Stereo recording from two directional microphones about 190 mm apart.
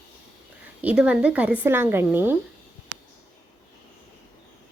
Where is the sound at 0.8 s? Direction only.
5° right (ahead or behind).